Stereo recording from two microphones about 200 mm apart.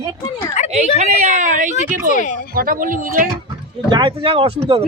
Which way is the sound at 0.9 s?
35° right (ahead or behind).